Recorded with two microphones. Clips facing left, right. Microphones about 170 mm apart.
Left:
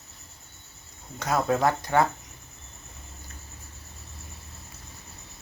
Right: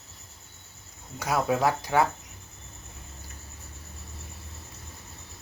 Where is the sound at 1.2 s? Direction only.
10° right (ahead or behind).